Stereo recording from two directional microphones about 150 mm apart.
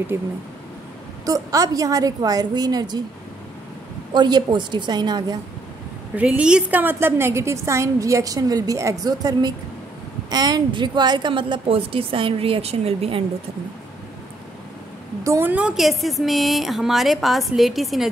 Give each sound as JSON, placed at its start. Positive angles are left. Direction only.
{"t": 0.1, "sound": "a woman's voice", "side_deg": -15}
{"t": 4.1, "sound": "a woman's voice", "side_deg": -30}
{"t": 6.1, "sound": "a woman's voice", "side_deg": -5}
{"t": 15.2, "sound": "a woman's voice", "side_deg": -15}